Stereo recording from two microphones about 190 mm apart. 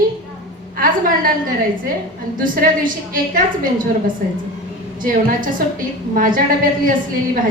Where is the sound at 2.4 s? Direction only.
45° right (ahead or behind).